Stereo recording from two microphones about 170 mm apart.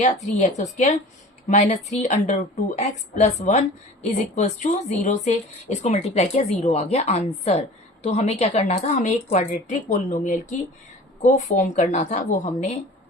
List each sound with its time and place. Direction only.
0.0 s a woman's voice: 45° left (ahead or behind)